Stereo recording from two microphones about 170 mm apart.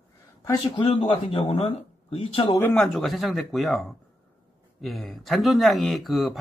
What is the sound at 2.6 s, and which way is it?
Speech, 5° left (ahead or behind).